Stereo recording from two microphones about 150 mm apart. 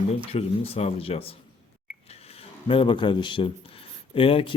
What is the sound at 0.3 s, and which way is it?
Speech, 40° left (ahead or behind).